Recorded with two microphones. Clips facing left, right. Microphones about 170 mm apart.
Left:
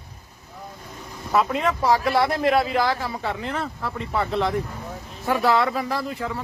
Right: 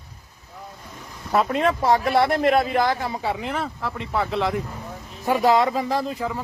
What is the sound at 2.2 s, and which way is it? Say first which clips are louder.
Speech: right 1 dB; 55° right (ahead or behind).